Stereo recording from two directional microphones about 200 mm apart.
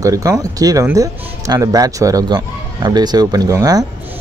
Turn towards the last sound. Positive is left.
turn(degrees=-15)  # may be behind; listen again after turning